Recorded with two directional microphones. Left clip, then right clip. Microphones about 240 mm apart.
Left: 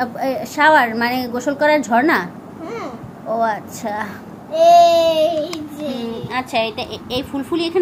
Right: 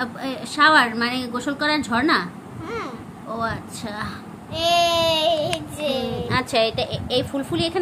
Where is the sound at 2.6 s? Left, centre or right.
Centre.